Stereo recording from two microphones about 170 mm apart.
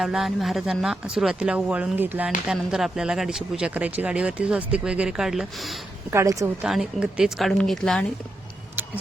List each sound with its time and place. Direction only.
0.0 s speech: centre (ahead or behind)
6.1 s speech: 15° right (ahead or behind)
6.7 s speech: 5° right (ahead or behind)